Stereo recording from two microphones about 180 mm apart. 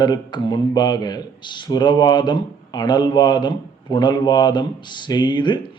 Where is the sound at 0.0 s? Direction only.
25° left (ahead or behind).